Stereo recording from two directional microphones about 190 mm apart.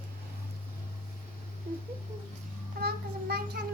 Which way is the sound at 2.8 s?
55° right (ahead or behind).